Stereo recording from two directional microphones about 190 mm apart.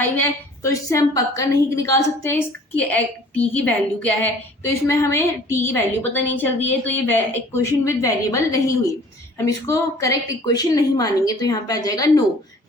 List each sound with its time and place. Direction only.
0.0 s a woman's voice: 15° left (ahead or behind)